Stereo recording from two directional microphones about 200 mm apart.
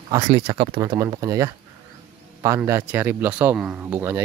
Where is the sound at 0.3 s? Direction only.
30° right (ahead or behind).